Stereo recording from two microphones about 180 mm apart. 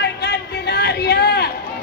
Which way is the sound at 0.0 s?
65° left (ahead or behind).